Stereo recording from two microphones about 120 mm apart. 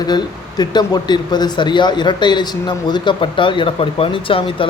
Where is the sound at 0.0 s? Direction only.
35° left (ahead or behind).